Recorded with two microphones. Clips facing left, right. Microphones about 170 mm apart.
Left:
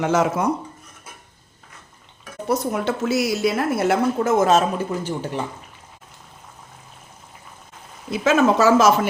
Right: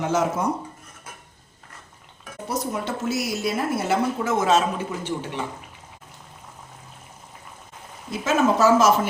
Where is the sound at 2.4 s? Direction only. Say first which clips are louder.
Left 5 dB; 65° left (ahead or behind).